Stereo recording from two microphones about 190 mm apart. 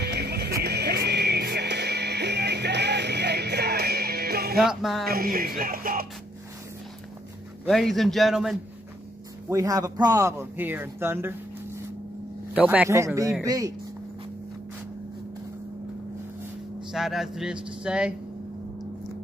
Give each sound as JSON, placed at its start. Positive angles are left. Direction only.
{"t": 0.0, "sound": "music", "side_deg": -60}
{"t": 4.6, "sound": "speech", "side_deg": 0}
{"t": 5.0, "sound": "speech", "side_deg": -50}
{"t": 7.6, "sound": "speech", "side_deg": 0}
{"t": 9.5, "sound": "a man's voice", "side_deg": -15}
{"t": 12.5, "sound": "a man's voice", "side_deg": -10}
{"t": 16.9, "sound": "speech", "side_deg": 0}